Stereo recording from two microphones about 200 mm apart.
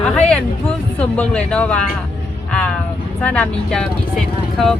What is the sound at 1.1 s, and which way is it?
Speech, 5° left (ahead or behind).